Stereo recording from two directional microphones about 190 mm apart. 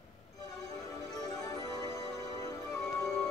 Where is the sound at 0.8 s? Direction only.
15° left (ahead or behind).